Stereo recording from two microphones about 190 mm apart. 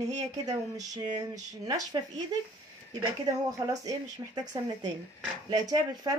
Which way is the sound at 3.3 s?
20° right (ahead or behind).